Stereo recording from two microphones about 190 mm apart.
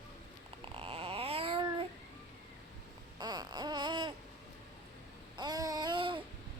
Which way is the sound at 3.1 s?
20° right (ahead or behind).